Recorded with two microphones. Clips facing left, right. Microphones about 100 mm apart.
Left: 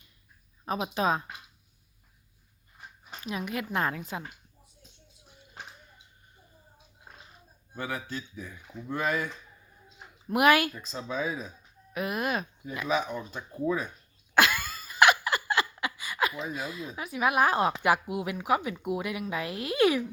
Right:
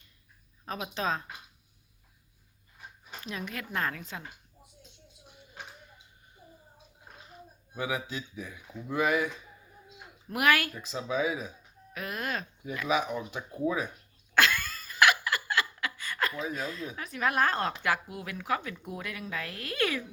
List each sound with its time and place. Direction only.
0.6 s a woman's voice: 15° left (ahead or behind)
3.2 s a woman's voice: 10° left (ahead or behind)
7.7 s speech: 10° right (ahead or behind)
10.3 s speech: 20° left (ahead or behind)
10.8 s speech: 5° right (ahead or behind)
11.9 s a woman's voice: 15° left (ahead or behind)
12.9 s speech: 5° right (ahead or behind)
14.3 s a sound: 15° left (ahead or behind)
19.3 s a woman's voice: 15° left (ahead or behind)